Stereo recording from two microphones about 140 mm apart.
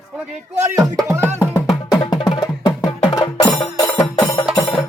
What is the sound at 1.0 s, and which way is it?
Music, 20° right (ahead or behind).